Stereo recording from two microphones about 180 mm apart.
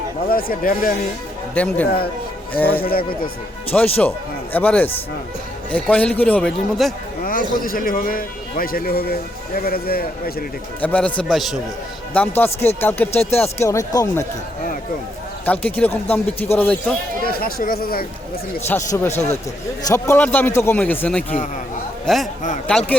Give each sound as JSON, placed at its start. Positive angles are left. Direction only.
{"t": 0.3, "sound": "speech", "side_deg": 55}
{"t": 1.5, "sound": "speech", "side_deg": 10}
{"t": 2.8, "sound": "a man's voice", "side_deg": 55}
{"t": 3.7, "sound": "speech", "side_deg": 10}
{"t": 7.6, "sound": "a man's voice", "side_deg": 50}
{"t": 10.8, "sound": "a man's voice", "side_deg": 10}
{"t": 12.4, "sound": "speech", "side_deg": 10}
{"t": 15.4, "sound": "speech", "side_deg": 10}
{"t": 17.2, "sound": "a man's voice", "side_deg": 55}
{"t": 18.7, "sound": "speech", "side_deg": 15}
{"t": 19.1, "sound": "speech", "side_deg": 35}
{"t": 19.9, "sound": "a man's voice", "side_deg": 15}